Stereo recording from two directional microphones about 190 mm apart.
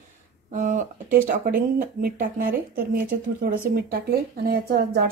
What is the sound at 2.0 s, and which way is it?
A woman's voice, 50° right (ahead or behind).